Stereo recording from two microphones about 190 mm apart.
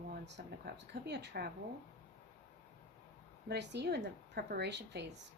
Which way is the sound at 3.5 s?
65° right (ahead or behind).